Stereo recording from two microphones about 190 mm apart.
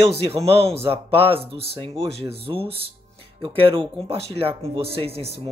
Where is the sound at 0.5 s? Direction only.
30° right (ahead or behind).